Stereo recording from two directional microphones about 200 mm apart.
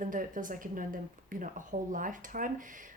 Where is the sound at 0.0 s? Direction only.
40° right (ahead or behind).